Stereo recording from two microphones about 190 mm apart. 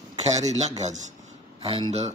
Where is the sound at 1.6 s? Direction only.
30° right (ahead or behind).